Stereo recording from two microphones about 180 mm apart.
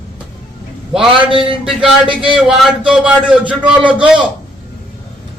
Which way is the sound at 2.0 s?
25° right (ahead or behind).